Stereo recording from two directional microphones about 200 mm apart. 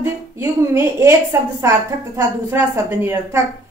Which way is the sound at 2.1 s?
15° right (ahead or behind).